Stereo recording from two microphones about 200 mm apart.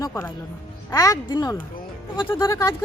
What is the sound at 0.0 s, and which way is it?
Music, 10° left (ahead or behind).